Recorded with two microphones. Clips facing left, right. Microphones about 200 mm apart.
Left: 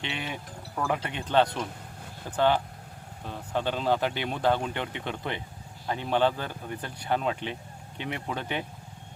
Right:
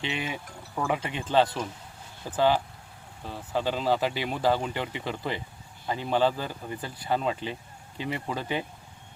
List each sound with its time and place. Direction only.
0.0 s speech: 5° right (ahead or behind)